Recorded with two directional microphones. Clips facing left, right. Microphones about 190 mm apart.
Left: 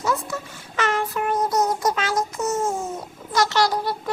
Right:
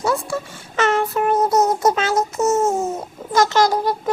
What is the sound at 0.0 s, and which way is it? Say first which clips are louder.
Speech: right 4 dB; 30° right (ahead or behind).